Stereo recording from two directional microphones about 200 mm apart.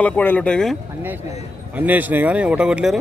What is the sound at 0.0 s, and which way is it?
Speech, 10° left (ahead or behind).